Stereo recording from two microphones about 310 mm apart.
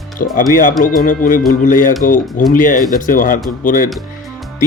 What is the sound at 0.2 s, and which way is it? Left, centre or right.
Speech, left.